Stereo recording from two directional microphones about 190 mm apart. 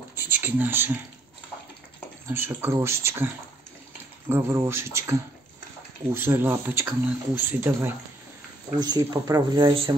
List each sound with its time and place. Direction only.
0.1 s a sound: 10° right (ahead or behind)
2.3 s speech: 10° right (ahead or behind)
4.3 s speech: 10° right (ahead or behind)
6.1 s speech: 10° right (ahead or behind)
8.7 s speech: 20° right (ahead or behind)